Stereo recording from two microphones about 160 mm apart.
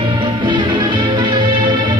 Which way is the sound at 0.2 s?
30° right (ahead or behind).